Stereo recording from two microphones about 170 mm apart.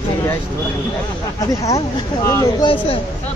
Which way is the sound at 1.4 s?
20° left (ahead or behind).